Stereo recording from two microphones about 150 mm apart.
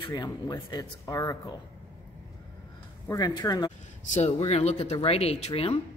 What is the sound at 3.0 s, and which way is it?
Speech, 25° left (ahead or behind).